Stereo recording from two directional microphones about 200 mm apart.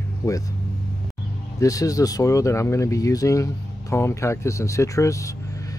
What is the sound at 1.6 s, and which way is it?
Speech, 15° left (ahead or behind).